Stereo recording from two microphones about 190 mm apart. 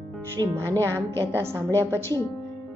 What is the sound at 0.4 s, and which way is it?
Speech, 15° right (ahead or behind).